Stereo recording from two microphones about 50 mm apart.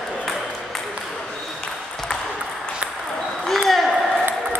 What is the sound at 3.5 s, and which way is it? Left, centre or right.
Ping, centre.